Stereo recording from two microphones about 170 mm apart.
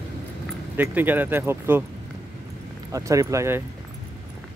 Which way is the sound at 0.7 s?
10° right (ahead or behind).